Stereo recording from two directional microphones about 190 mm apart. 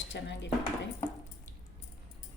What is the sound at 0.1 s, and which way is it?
Speech, 70° left (ahead or behind).